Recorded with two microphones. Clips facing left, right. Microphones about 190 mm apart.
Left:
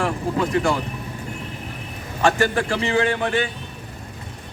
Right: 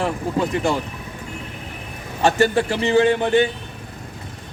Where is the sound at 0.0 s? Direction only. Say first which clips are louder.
Right 1 dB; 20° right (ahead or behind).